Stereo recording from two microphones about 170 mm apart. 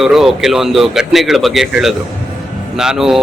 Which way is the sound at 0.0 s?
Centre (ahead or behind).